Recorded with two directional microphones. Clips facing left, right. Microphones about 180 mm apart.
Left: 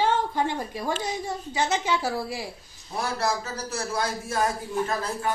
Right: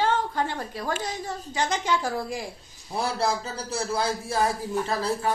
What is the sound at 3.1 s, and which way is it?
Speech, 30° right (ahead or behind).